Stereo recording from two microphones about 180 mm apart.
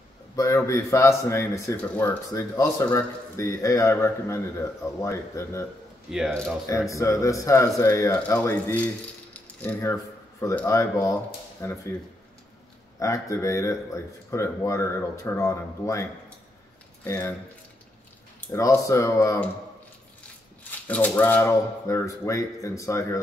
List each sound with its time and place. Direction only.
0.4 s speech: 15° left (ahead or behind)
6.0 s speech: centre (ahead or behind)
6.9 s speech: 15° left (ahead or behind)
9.3 s rattle: 10° left (ahead or behind)
10.4 s speech: 15° left (ahead or behind)
13.0 s speech: 15° left (ahead or behind)
18.5 s speech: 15° left (ahead or behind)
20.8 s speech: 10° left (ahead or behind)